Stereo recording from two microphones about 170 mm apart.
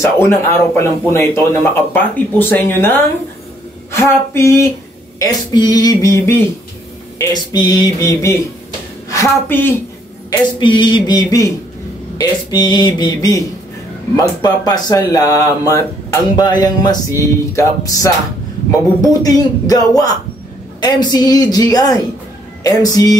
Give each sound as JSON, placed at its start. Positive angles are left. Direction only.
{"t": 0.0, "sound": "speech", "side_deg": 15}
{"t": 10.6, "sound": "speech", "side_deg": 25}